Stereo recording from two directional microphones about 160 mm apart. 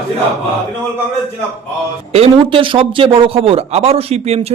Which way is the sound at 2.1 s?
35° right (ahead or behind).